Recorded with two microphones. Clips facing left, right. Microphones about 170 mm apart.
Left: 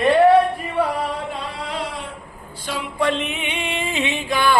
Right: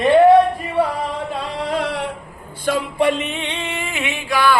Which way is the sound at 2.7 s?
55° right (ahead or behind).